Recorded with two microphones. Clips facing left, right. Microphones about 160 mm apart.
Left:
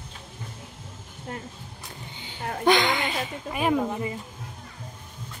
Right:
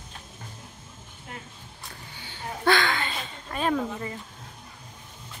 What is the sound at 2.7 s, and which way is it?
Speech, 15° left (ahead or behind).